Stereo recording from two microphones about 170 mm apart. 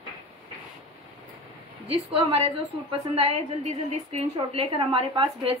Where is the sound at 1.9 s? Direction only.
35° right (ahead or behind).